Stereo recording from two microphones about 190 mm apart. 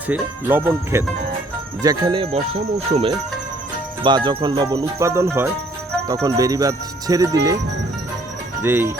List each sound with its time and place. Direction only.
0.1 s cricket: 10° right (ahead or behind)
8.6 s cricket: 10° right (ahead or behind)